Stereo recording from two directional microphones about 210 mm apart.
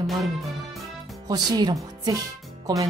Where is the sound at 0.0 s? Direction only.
Centre (ahead or behind).